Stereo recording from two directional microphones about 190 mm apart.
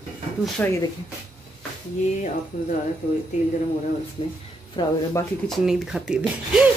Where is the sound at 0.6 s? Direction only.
10° left (ahead or behind).